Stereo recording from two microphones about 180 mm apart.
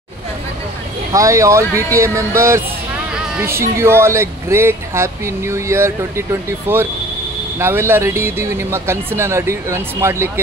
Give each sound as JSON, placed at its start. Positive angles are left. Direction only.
{"t": 1.1, "sound": "speech", "side_deg": -15}